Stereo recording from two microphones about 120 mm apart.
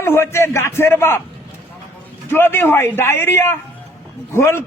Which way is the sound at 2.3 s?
20° left (ahead or behind).